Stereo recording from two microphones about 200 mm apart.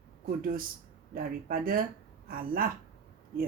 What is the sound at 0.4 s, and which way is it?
Speech, 45° right (ahead or behind).